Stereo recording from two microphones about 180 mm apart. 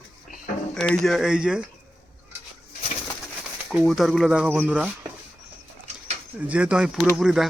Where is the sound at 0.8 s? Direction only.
5° left (ahead or behind).